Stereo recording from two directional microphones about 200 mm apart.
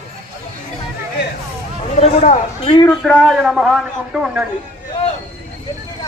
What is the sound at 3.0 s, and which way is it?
A man's voice, 5° left (ahead or behind).